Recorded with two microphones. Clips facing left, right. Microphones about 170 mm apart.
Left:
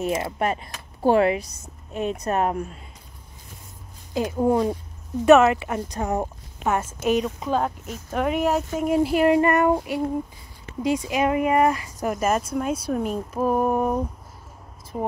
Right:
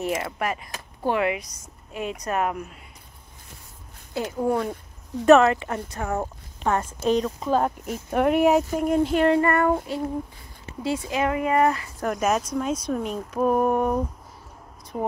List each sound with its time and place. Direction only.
0.0 s a woman's voice: 25° left (ahead or behind)
4.1 s speech: 15° left (ahead or behind)
6.6 s speech: 5° left (ahead or behind)
7.4 s speech: 5° right (ahead or behind)
8.7 s speech: 5° left (ahead or behind)
12.1 s speech: centre (ahead or behind)